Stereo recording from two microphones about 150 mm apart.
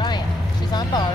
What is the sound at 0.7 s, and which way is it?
Speech, 30° left (ahead or behind).